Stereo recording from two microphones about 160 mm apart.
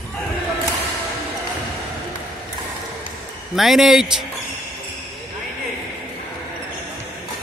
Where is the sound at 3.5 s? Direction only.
Centre (ahead or behind).